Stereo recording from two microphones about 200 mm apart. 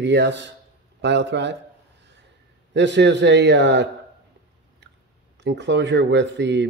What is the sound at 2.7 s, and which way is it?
A man's voice, 60° right (ahead or behind).